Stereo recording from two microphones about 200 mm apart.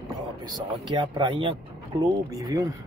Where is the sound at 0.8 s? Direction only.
25° right (ahead or behind).